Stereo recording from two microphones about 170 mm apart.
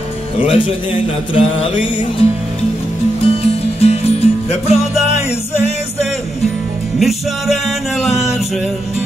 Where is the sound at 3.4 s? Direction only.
35° left (ahead or behind).